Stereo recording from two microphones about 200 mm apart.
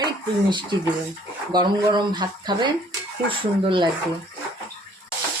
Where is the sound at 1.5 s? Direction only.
20° right (ahead or behind).